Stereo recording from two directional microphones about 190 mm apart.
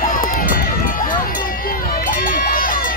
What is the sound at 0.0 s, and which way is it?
Run, 45° left (ahead or behind).